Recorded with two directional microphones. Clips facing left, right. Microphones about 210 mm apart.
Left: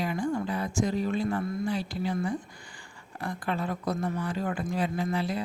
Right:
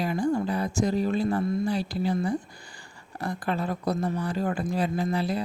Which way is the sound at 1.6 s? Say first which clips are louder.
Right 3 dB; 35° right (ahead or behind).